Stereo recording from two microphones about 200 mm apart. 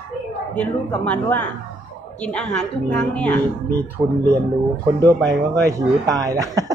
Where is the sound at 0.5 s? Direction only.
5° left (ahead or behind).